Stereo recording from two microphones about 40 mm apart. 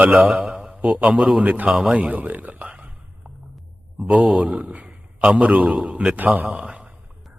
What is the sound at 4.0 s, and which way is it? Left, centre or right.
Speech, right.